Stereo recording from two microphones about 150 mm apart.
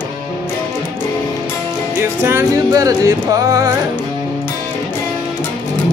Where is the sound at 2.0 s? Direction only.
15° right (ahead or behind).